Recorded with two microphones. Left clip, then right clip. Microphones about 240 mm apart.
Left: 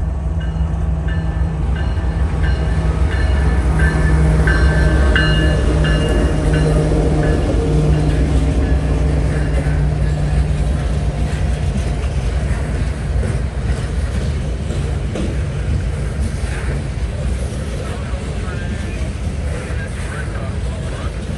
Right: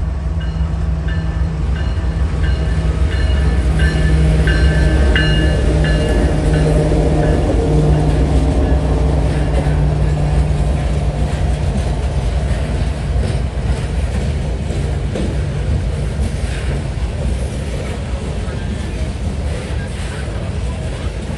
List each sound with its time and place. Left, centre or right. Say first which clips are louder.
3.4 s train: left 1 dB; centre
4.5 s music: left 2 dB; centre
6.5 s vehicle: right 1 dB; left
6.9 s vehicle: right 2 dB; left